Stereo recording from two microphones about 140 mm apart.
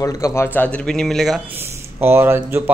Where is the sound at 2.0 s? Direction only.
15° right (ahead or behind).